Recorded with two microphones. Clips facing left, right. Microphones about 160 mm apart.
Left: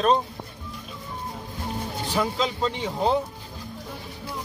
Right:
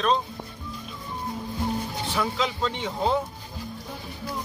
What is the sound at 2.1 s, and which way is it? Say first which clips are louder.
Speech: left 2 dB; 35° left (ahead or behind).